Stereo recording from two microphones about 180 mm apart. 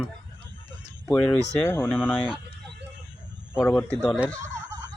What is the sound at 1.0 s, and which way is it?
Speech, 5° left (ahead or behind).